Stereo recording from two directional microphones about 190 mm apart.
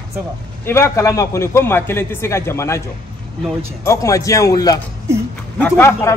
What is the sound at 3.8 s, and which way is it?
A man's voice, 15° left (ahead or behind).